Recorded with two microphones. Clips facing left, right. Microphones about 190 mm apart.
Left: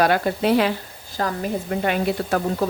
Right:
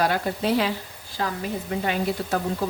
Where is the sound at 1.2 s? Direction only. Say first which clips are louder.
Left 3 dB; 45° left (ahead or behind).